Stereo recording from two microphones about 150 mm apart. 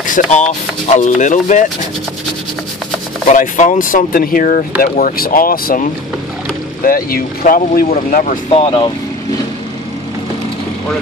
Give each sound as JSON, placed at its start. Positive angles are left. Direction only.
{"t": 0.0, "sound": "speech", "side_deg": 55}
{"t": 3.3, "sound": "speech", "side_deg": 55}
{"t": 8.1, "sound": "speech", "side_deg": 60}
{"t": 8.5, "sound": "speech", "side_deg": 40}